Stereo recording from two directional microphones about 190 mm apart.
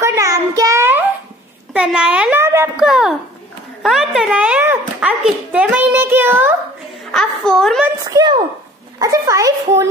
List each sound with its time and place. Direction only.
0.0 s child singing: 15° right (ahead or behind)
1.7 s a child's voice: 5° right (ahead or behind)
7.1 s a child's voice: centre (ahead or behind)
7.8 s a child's voice: 20° right (ahead or behind)